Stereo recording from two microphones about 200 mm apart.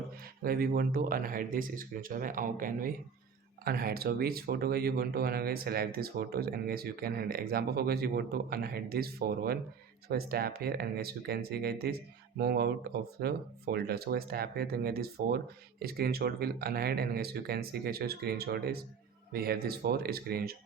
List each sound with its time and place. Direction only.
0.4 s speech: 45° right (ahead or behind)